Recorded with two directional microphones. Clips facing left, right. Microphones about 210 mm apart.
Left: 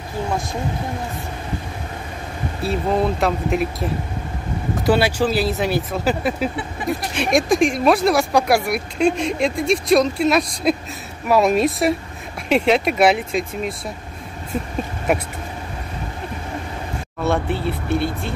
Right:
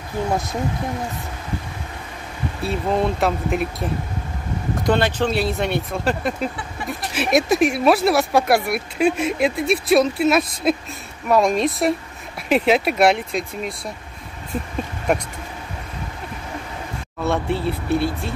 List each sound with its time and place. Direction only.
2.6 s speech: centre (ahead or behind)
17.2 s speech: centre (ahead or behind)